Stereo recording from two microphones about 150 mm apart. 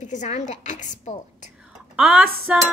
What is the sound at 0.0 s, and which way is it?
A woman's voice, 55° left (ahead or behind).